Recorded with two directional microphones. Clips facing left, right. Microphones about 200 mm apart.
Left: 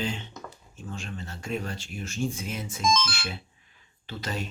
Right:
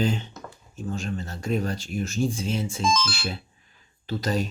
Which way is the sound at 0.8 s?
40° right (ahead or behind).